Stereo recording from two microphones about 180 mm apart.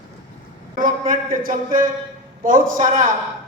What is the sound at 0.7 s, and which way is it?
A man's voice, 50° right (ahead or behind).